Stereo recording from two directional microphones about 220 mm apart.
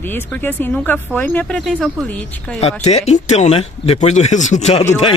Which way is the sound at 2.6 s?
30° left (ahead or behind).